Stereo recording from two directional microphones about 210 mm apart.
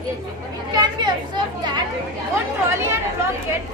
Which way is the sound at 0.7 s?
20° right (ahead or behind).